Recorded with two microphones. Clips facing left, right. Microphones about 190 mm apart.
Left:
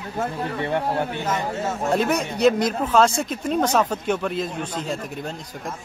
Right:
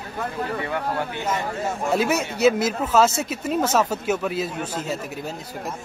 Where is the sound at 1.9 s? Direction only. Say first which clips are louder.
Even; 5° right (ahead or behind).